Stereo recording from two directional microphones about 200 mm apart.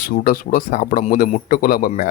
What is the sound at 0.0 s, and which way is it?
Speech, 45° left (ahead or behind).